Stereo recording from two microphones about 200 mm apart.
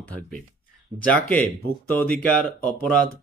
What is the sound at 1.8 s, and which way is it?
A man's voice, 10° left (ahead or behind).